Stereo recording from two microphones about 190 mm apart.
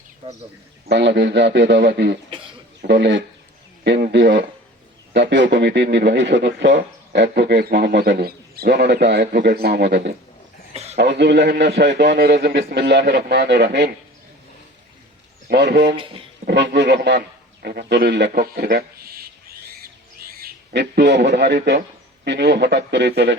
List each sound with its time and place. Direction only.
0.9 s speech: 65° right (ahead or behind)
3.8 s speech: 60° right (ahead or behind)
9.2 s speech: 50° right (ahead or behind); by 13.9 s 65° right (ahead or behind)
15.4 s speech: 60° right (ahead or behind)
16.0 s speech: 25° right (ahead or behind)
16.5 s speech: 65° right (ahead or behind)
18.3 s a sound: 50° right (ahead or behind)
20.4 s a man's voice: 60° right (ahead or behind)